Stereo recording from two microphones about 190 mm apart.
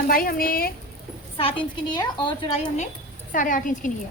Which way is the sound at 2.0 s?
25° left (ahead or behind).